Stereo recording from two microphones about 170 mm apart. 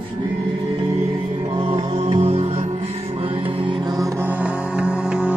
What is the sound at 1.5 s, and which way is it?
Music, 30° right (ahead or behind).